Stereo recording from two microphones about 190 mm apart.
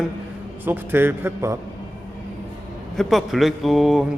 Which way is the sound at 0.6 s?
10° right (ahead or behind).